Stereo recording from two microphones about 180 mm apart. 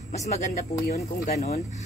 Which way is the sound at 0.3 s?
40° left (ahead or behind).